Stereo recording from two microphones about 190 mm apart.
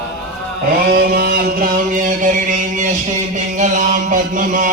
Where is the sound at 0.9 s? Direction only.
55° right (ahead or behind).